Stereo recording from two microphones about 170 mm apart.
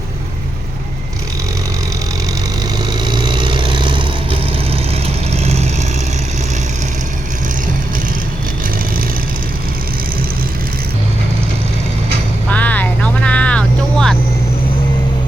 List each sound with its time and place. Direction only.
3.0 s vehicle: 25° right (ahead or behind)
5.0 s vehicle: 40° right (ahead or behind)
12.5 s vehicle: 10° left (ahead or behind)